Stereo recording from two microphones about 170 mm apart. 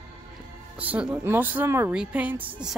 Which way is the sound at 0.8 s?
10° right (ahead or behind).